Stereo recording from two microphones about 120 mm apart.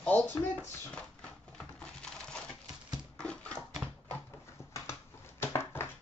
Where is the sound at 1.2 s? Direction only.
10° left (ahead or behind).